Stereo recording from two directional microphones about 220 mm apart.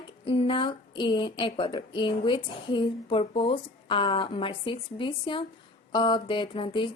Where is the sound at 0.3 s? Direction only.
25° left (ahead or behind).